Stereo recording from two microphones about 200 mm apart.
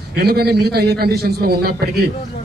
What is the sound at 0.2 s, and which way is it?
A man's voice, 50° right (ahead or behind).